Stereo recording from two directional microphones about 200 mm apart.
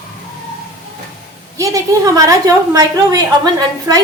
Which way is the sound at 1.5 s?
15° right (ahead or behind).